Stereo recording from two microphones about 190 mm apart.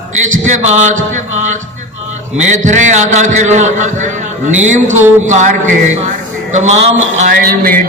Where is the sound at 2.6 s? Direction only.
40° right (ahead or behind).